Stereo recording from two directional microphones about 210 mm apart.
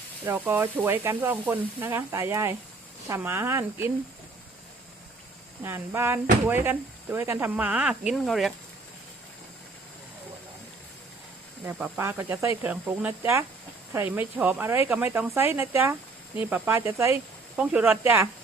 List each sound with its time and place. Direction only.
0.3 s speech: 10° right (ahead or behind)
5.6 s speech: 10° right (ahead or behind)
11.6 s speech: 10° right (ahead or behind)